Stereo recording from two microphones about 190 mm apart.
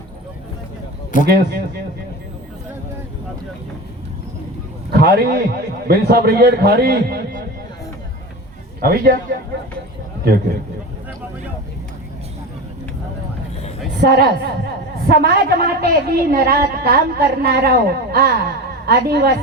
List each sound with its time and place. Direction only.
1.3 s a woman's voice: 55° right (ahead or behind)
4.9 s a man's voice: 55° right (ahead or behind)
8.8 s a woman's voice: 55° right (ahead or behind)
14.0 s a woman's voice: 55° right (ahead or behind)